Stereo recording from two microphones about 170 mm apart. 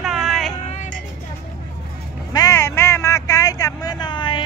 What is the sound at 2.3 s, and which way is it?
Vehicle, 15° left (ahead or behind).